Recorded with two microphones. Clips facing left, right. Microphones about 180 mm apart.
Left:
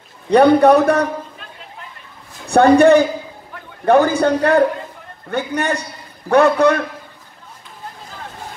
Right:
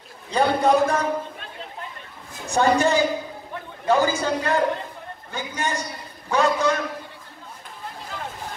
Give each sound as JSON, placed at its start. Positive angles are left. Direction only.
{"t": 0.3, "sound": "a man's voice", "side_deg": 65}
{"t": 2.5, "sound": "a man's voice", "side_deg": 60}